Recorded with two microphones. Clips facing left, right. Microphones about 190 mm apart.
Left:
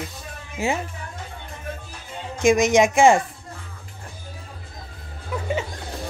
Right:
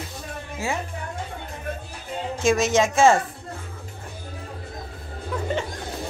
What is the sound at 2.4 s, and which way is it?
Speech, 15° left (ahead or behind).